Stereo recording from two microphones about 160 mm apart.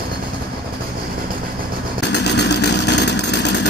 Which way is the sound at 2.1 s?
90° left.